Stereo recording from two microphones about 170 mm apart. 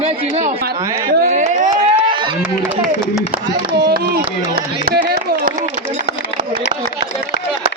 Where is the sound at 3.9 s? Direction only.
65° right (ahead or behind).